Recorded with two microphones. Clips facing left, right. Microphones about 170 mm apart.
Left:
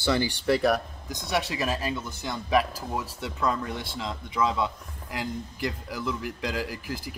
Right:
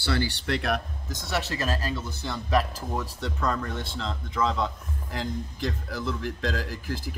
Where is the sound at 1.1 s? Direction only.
15° left (ahead or behind).